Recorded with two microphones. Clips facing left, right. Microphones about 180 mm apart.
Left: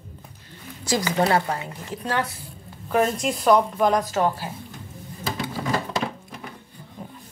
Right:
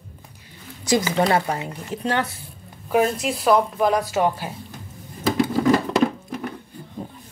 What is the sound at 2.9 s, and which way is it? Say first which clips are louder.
A woman's voice: right 2 dB; 5° right (ahead or behind).